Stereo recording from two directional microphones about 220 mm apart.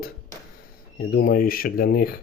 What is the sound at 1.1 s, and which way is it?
Speech, 40° left (ahead or behind).